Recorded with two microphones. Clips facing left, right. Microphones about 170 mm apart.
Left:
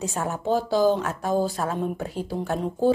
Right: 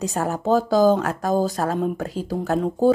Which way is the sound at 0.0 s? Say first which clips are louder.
Right 4 dB; 40° right (ahead or behind).